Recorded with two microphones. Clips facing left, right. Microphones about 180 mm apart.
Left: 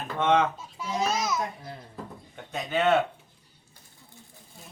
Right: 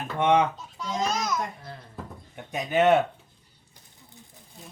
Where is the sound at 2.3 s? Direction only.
15° right (ahead or behind).